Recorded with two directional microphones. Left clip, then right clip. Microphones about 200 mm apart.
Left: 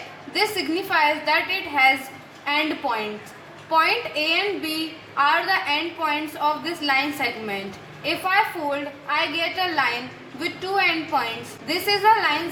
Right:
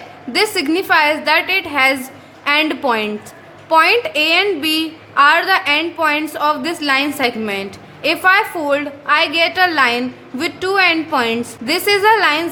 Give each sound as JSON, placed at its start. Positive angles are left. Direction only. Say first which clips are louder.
{"t": 0.3, "sound": "a woman's voice", "louder": "right 7 dB", "side_deg": -50}